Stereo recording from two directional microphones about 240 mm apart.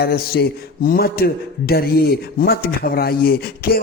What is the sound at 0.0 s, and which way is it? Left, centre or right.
A man's voice, left.